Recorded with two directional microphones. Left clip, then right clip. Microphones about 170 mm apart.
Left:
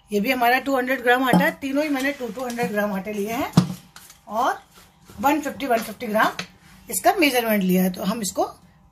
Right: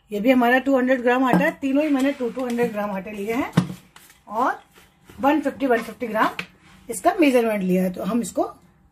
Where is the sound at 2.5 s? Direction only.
40° right (ahead or behind).